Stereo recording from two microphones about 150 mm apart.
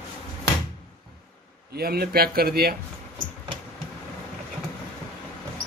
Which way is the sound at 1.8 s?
90° right.